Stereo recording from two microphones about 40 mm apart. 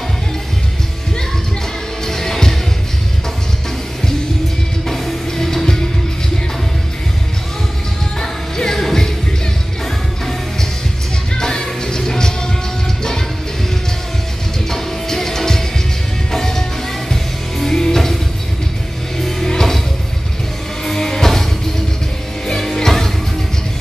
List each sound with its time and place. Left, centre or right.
2.0 s music: centre
4.8 s music: centre
8.2 s music: centre
11.3 s music: centre
14.7 s music: centre
19.1 s music: centre
20.8 s music: centre
22.5 s music: centre